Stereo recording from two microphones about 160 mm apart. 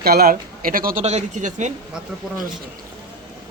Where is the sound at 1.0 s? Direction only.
45° right (ahead or behind).